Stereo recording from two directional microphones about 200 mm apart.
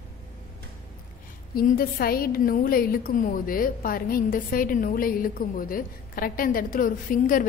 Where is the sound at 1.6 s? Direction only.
45° left (ahead or behind).